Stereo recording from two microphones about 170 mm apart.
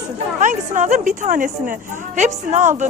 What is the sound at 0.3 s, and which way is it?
A woman's voice, 45° right (ahead or behind).